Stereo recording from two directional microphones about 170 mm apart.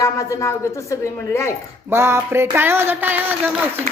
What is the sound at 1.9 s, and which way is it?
A man's voice, 15° right (ahead or behind).